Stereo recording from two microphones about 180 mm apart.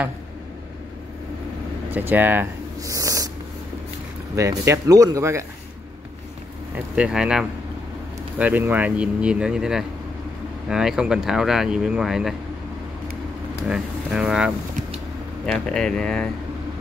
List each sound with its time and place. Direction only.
1.9 s speech: 10° right (ahead or behind)
4.4 s speech: 20° right (ahead or behind)
7.0 s speech: 5° right (ahead or behind)
13.7 s speech: 5° right (ahead or behind)
15.7 s speech: 5° left (ahead or behind)